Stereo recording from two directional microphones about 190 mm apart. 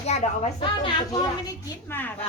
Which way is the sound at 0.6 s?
25° left (ahead or behind).